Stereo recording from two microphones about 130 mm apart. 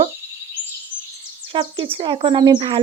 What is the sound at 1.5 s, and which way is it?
Speech, 40° right (ahead or behind).